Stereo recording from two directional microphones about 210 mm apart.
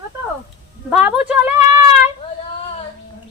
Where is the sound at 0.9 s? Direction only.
5° right (ahead or behind).